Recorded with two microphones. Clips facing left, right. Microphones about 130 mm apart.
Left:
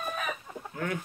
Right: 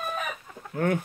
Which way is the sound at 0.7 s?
50° right (ahead or behind).